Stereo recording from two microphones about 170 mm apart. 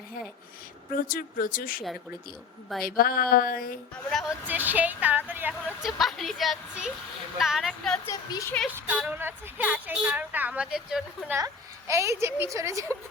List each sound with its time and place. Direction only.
1.0 s a sound: 55° left (ahead or behind)
2.8 s a sound: 60° left (ahead or behind)
4.1 s a woman's voice: centre (ahead or behind)
8.0 s speech: 20° left (ahead or behind)
8.7 s a woman's voice: 10° right (ahead or behind)
11.3 s a woman's voice: 20° right (ahead or behind)